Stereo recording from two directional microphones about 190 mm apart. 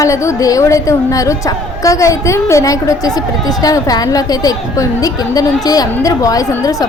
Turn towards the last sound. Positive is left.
turn(degrees=20)  # may be behind; listen again after turning